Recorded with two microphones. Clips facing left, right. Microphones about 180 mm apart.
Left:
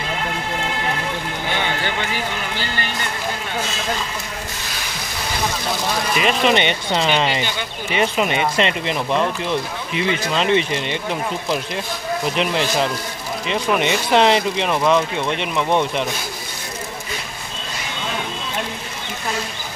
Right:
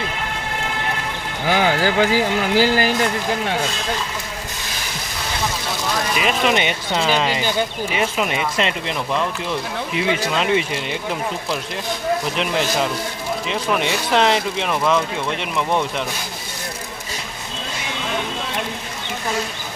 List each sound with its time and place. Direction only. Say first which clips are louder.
1.5 s speech: right 7 dB; 90° right
6.1 s speech: left 2 dB; centre (ahead or behind)
12.4 s speech: left 1 dB; centre (ahead or behind)